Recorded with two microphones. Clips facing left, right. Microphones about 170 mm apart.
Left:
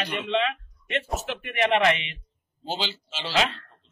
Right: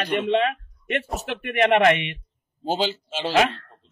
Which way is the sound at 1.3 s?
60° right (ahead or behind).